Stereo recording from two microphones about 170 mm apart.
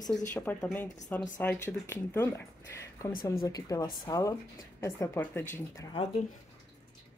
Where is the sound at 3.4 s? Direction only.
20° left (ahead or behind).